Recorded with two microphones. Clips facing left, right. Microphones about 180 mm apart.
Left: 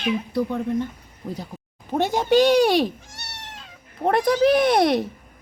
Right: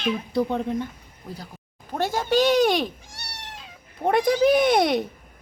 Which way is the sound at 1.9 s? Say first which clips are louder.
Left 4 dB; 20° left (ahead or behind).